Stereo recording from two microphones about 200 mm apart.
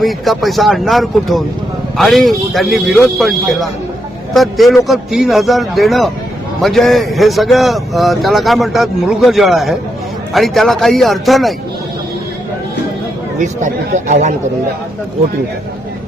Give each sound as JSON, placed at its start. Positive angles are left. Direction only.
{"t": 0.0, "sound": "speech", "side_deg": 0}
{"t": 13.4, "sound": "speech", "side_deg": -35}